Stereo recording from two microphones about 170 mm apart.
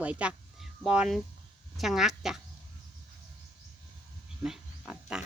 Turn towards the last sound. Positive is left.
turn(degrees=-5)  # may be behind; listen again after turning